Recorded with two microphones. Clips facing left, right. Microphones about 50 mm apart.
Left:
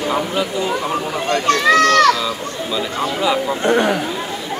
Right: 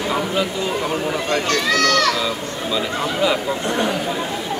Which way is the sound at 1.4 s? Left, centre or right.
Left.